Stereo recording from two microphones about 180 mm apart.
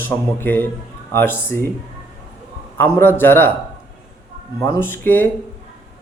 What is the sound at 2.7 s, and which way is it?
Speech, 10° left (ahead or behind).